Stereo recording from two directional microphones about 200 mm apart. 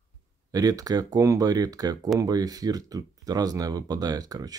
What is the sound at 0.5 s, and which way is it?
Speech, 20° right (ahead or behind).